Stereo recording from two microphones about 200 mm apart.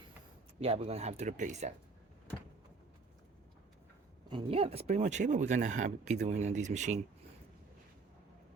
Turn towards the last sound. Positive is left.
turn(degrees=-35)  # may be behind; listen again after turning